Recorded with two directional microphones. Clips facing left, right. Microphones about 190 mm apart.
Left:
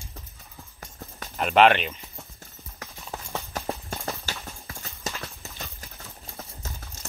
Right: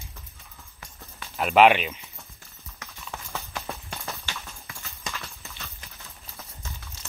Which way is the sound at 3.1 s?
35° left (ahead or behind).